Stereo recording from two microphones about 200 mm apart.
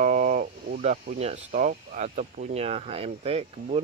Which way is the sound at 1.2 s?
35° right (ahead or behind).